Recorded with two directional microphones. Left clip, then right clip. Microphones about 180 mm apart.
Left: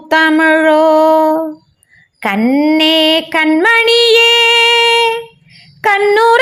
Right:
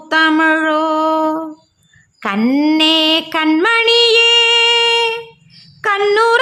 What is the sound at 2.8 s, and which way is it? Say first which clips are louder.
Music: left 1 dB; 10° left (ahead or behind).